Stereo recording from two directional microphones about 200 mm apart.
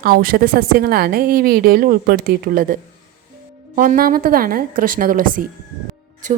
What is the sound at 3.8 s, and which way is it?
A woman's voice, 45° right (ahead or behind).